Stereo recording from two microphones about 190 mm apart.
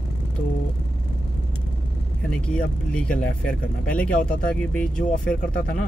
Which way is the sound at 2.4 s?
5° left (ahead or behind).